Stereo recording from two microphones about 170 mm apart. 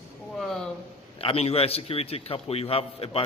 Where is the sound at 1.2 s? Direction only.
35° left (ahead or behind).